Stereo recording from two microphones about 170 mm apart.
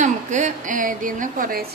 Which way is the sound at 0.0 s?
45° right (ahead or behind).